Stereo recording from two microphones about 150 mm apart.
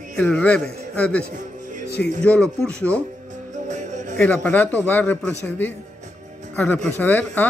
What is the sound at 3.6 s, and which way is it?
Music, 55° right (ahead or behind).